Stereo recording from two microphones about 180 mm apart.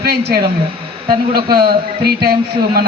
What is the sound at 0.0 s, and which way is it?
A man's voice, 65° right (ahead or behind).